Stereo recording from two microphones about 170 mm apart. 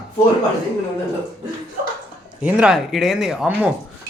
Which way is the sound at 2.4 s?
5° right (ahead or behind).